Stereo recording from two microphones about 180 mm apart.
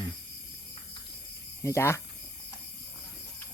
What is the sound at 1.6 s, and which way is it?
Speech, 15° left (ahead or behind).